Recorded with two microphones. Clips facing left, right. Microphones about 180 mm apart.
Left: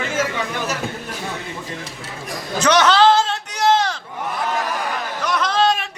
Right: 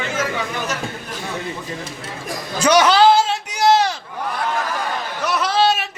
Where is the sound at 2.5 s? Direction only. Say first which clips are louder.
Right 1 dB; 10° right (ahead or behind).